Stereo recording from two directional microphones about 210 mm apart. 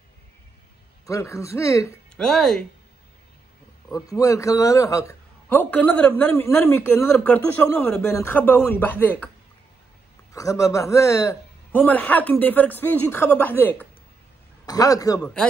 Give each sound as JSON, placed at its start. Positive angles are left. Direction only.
{"t": 1.0, "sound": "a man's voice", "side_deg": 15}
{"t": 2.1, "sound": "speech", "side_deg": 0}
{"t": 3.9, "sound": "a man's voice", "side_deg": 15}
{"t": 10.3, "sound": "a man's voice", "side_deg": 15}